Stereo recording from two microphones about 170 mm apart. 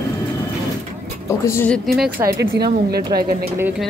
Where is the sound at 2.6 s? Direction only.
70° right (ahead or behind).